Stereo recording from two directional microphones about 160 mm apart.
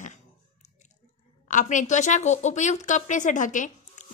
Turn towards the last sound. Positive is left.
turn(degrees=50)  # may be behind; listen again after turning